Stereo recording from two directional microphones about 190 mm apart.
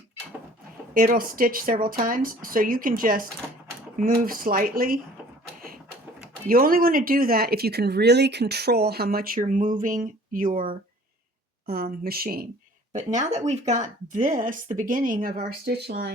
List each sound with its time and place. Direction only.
0.9 s speech: 50° right (ahead or behind)
6.5 s speech: 50° right (ahead or behind)
11.6 s speech: 50° right (ahead or behind)
12.9 s speech: 40° right (ahead or behind); by 16.1 s 60° right (ahead or behind)